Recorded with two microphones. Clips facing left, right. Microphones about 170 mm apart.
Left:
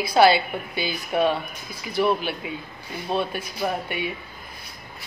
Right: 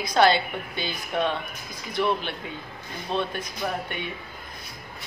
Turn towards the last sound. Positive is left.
turn(degrees=10)  # may be behind; listen again after turning